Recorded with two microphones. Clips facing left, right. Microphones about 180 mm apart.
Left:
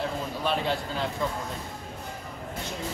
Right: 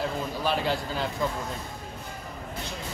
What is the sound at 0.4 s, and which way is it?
Speech, centre (ahead or behind).